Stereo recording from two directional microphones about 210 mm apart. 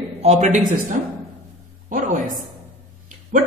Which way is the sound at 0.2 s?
30° right (ahead or behind).